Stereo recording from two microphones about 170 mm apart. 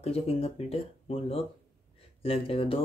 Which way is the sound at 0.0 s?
35° left (ahead or behind).